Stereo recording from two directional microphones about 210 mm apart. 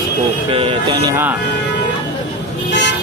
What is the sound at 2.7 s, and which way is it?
Vehicle, 55° left (ahead or behind).